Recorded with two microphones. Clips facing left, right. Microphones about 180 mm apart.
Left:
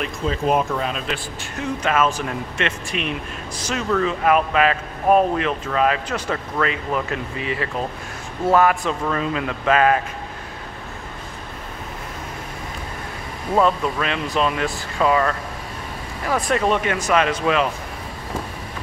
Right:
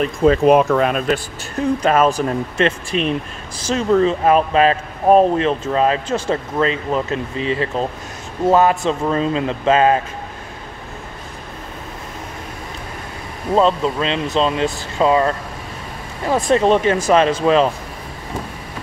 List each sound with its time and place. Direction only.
0.2 s speech: 70° right (ahead or behind)
1.0 s speech: 40° right (ahead or behind)
13.6 s speech: 25° right (ahead or behind)